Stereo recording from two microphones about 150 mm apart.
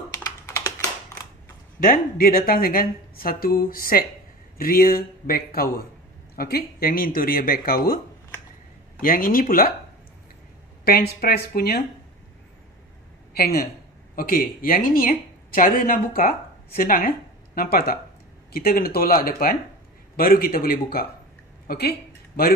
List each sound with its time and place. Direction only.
1.8 s a man's voice: 70° left (ahead or behind)
9.0 s speech: 65° left (ahead or behind)
10.9 s speech: 90° left
13.3 s speech: 85° left
14.1 s speech: 70° left (ahead or behind)
17.6 s a man's voice: 90° left